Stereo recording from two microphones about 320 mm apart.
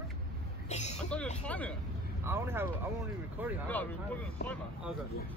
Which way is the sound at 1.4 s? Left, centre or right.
Centre.